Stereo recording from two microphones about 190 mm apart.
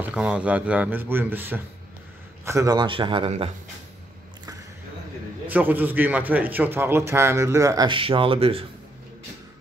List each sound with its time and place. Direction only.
0.1 s a man's voice: 5° right (ahead or behind); by 3.4 s 30° right (ahead or behind)
5.5 s a man's voice: 10° right (ahead or behind); by 8.6 s 30° right (ahead or behind)